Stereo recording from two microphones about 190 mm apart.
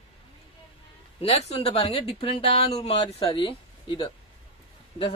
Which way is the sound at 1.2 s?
35° left (ahead or behind).